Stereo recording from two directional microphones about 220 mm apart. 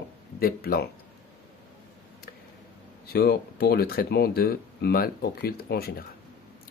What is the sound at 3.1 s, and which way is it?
Speech, 45° left (ahead or behind).